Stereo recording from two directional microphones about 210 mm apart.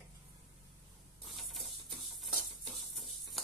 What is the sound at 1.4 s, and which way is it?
Printer, centre (ahead or behind).